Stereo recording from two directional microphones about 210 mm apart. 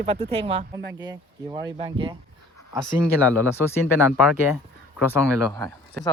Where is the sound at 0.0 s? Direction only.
30° right (ahead or behind).